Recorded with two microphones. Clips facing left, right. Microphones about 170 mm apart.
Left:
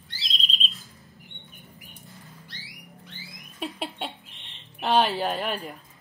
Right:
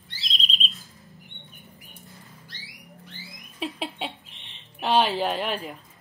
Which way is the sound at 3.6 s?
Centre (ahead or behind).